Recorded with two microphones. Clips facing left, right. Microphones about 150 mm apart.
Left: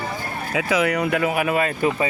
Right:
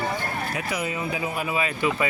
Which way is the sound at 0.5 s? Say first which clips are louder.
Left 13 dB; 90° left.